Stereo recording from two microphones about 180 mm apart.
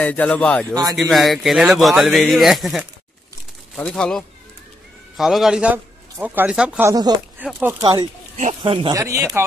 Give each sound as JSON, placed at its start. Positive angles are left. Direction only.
{"t": 0.0, "sound": "a man's voice", "side_deg": 10}
{"t": 6.9, "sound": "speech", "side_deg": -20}
{"t": 7.3, "sound": "speech", "side_deg": -10}
{"t": 8.4, "sound": "speech", "side_deg": -35}
{"t": 8.9, "sound": "speech", "side_deg": -20}